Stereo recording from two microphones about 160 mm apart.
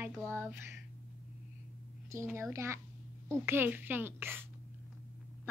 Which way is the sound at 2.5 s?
15° right (ahead or behind).